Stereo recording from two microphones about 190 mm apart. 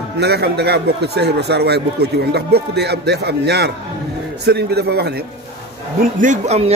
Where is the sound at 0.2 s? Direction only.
60° right (ahead or behind).